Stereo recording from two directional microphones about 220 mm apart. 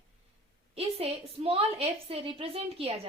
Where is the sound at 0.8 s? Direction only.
30° right (ahead or behind).